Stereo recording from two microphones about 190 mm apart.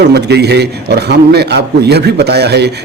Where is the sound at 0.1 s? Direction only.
60° right (ahead or behind).